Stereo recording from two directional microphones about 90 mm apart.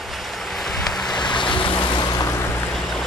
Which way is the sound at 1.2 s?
60° left (ahead or behind).